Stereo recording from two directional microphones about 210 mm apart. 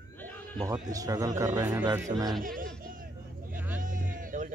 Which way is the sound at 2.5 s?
40° right (ahead or behind).